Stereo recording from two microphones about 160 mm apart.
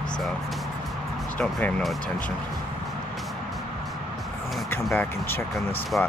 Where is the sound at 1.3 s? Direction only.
10° left (ahead or behind).